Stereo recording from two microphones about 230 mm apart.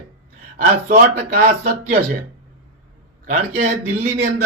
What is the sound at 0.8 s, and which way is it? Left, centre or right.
Speech, right.